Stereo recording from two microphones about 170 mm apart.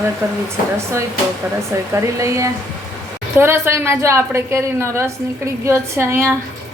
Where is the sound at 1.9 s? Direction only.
15° right (ahead or behind).